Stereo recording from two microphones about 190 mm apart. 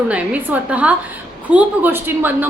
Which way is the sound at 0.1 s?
5° right (ahead or behind).